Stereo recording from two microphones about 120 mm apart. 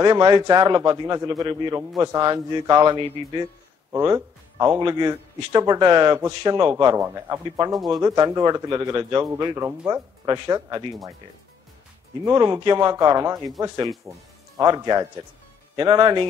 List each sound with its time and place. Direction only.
0.0 s a man's voice: 40° right (ahead or behind)
3.9 s speech: 20° right (ahead or behind)
4.8 s a man's voice: 40° right (ahead or behind)
7.0 s a man's voice: 25° right (ahead or behind)
7.7 s speech: centre (ahead or behind)
8.0 s a man's voice: 30° right (ahead or behind)
10.4 s a man's voice: 40° right (ahead or behind)
12.4 s a man's voice: 35° right (ahead or behind)